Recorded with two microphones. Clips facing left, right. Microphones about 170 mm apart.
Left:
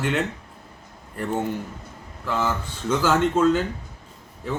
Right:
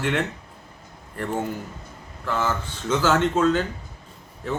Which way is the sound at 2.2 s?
10° left (ahead or behind).